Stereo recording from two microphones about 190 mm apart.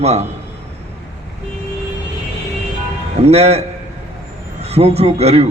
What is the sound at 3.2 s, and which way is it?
A man's voice, 35° right (ahead or behind).